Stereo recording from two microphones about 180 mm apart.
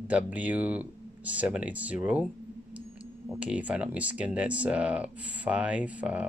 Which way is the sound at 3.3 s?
5° right (ahead or behind).